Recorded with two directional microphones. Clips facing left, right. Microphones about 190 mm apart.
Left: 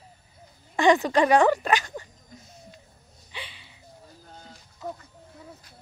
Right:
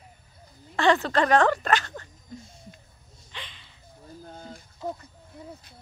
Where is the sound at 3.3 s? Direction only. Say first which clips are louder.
Left 2 dB; 10° left (ahead or behind).